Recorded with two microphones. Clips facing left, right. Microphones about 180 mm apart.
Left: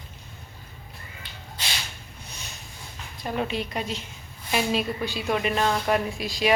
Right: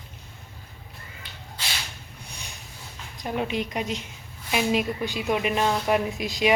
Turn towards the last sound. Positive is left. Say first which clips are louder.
# right 1 dB
turn(degrees=-20)  # may be behind; listen again after turning